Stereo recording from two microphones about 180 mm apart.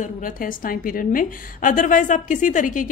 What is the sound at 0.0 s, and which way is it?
A woman's voice, 50° left (ahead or behind).